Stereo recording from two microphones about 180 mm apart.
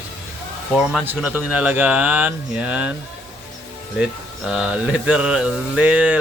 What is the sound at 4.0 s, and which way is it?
Speech, 5° right (ahead or behind).